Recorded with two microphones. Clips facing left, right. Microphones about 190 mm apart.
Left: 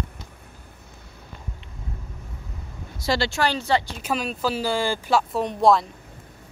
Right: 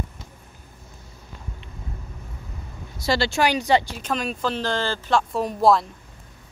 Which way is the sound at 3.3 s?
15° right (ahead or behind).